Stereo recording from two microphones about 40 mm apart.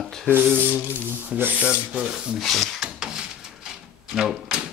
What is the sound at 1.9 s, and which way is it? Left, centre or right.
Rub, right.